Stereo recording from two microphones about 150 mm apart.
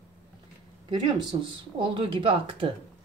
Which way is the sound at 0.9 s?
35° right (ahead or behind).